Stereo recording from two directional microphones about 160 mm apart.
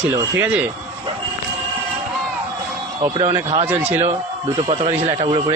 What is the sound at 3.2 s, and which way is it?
Speech, 30° right (ahead or behind).